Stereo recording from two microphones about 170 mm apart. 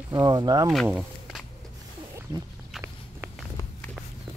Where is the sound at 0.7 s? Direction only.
Centre (ahead or behind).